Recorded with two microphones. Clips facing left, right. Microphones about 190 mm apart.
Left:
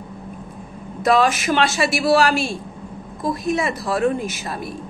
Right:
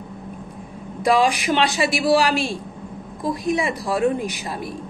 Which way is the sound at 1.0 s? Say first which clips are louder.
Left 1 dB; 15° right (ahead or behind).